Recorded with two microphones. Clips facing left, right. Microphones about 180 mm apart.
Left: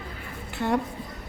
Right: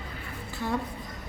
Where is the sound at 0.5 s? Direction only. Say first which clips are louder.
Left 5 dB; 65° left (ahead or behind).